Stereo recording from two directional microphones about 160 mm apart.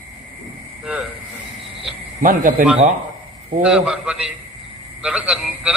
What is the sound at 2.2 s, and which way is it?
Speech, 60° right (ahead or behind).